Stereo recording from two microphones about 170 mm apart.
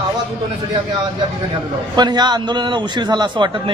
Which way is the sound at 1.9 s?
25° right (ahead or behind).